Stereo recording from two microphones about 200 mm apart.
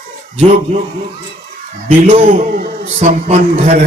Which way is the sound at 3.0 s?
35° right (ahead or behind).